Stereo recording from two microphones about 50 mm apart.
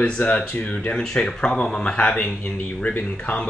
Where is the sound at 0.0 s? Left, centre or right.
Left.